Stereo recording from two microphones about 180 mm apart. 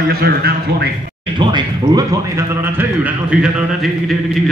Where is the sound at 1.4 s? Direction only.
25° right (ahead or behind).